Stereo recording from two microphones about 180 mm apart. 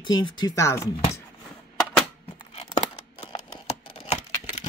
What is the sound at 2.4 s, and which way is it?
Tearing, 35° left (ahead or behind).